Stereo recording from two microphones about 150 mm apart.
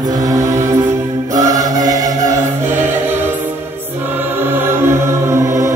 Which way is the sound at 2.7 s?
15° right (ahead or behind).